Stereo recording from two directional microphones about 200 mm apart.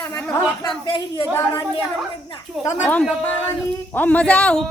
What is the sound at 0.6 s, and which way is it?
Speech, 25° left (ahead or behind).